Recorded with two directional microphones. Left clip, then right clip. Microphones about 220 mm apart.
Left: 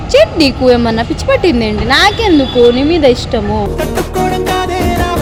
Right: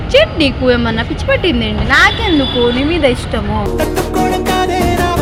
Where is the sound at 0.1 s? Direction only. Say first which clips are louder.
Left 2 dB; 35° left (ahead or behind).